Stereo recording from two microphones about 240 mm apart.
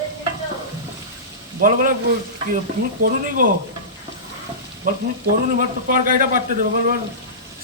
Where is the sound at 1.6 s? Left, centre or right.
Right.